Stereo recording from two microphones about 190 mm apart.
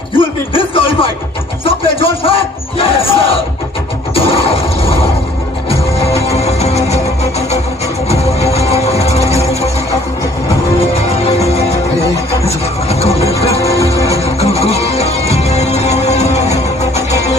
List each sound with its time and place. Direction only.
0.2 s a sound: 30° left (ahead or behind)
1.6 s music: 30° left (ahead or behind)
2.7 s battle cry: 30° left (ahead or behind)
4.1 s a sound: 30° left (ahead or behind)
6.1 s music: 35° left (ahead or behind)
11.3 s music: 35° left (ahead or behind)
12.5 s a sound: 35° left (ahead or behind)
13.6 s music: 15° left (ahead or behind)
14.4 s music: 35° left (ahead or behind)